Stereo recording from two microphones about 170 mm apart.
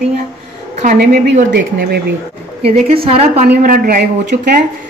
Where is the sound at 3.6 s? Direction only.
55° right (ahead or behind).